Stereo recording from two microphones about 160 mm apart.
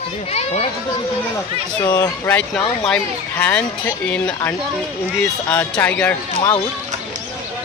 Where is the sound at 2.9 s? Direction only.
10° left (ahead or behind).